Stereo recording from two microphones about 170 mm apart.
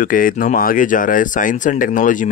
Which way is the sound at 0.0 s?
55° left (ahead or behind).